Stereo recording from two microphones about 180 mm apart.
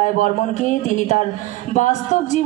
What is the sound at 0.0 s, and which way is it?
A woman's voice, 45° left (ahead or behind).